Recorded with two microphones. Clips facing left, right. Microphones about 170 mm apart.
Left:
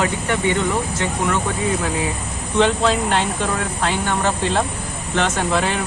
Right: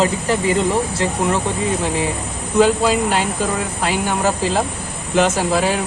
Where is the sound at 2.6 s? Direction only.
5° right (ahead or behind).